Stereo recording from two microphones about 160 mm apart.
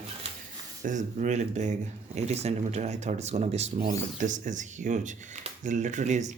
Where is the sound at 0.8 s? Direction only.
50° right (ahead or behind).